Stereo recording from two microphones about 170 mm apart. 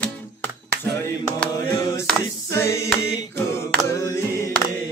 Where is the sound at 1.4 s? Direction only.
10° left (ahead or behind).